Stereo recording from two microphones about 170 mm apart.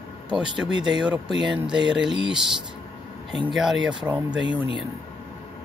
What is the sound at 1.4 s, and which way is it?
Speech, 25° right (ahead or behind).